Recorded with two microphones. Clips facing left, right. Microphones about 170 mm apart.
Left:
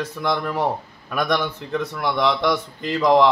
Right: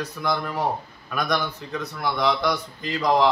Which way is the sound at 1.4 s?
60° left (ahead or behind).